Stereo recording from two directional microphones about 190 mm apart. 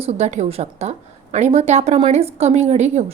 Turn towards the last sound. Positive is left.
turn(degrees=-35)  # may be behind; listen again after turning